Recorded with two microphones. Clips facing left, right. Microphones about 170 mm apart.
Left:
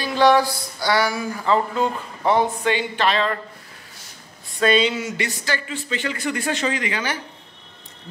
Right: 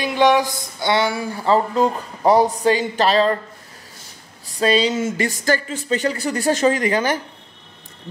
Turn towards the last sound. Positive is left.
turn(degrees=-45)  # may be behind; listen again after turning